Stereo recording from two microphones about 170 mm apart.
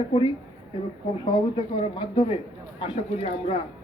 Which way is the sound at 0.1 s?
30° left (ahead or behind).